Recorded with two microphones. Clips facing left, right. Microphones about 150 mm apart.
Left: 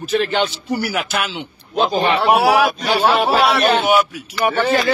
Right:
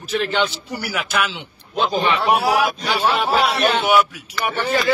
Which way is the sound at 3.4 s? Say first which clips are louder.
Left 3 dB; 75° left (ahead or behind).